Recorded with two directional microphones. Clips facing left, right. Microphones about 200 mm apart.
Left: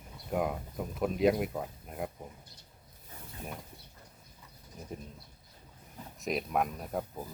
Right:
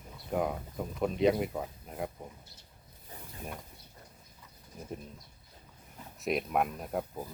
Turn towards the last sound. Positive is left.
turn(degrees=-5)  # may be behind; listen again after turning